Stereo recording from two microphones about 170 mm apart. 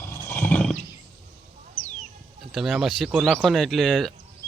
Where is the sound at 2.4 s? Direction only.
Centre (ahead or behind).